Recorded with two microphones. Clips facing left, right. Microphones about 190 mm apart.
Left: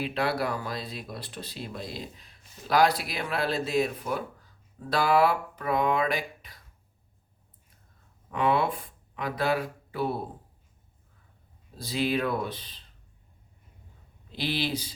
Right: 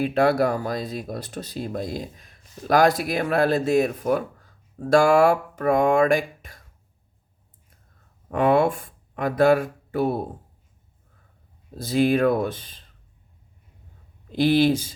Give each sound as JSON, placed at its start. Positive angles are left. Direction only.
{"t": 0.0, "sound": "speech", "side_deg": -45}
{"t": 8.3, "sound": "speech", "side_deg": -50}
{"t": 11.8, "sound": "speech", "side_deg": -50}
{"t": 14.3, "sound": "speech", "side_deg": -50}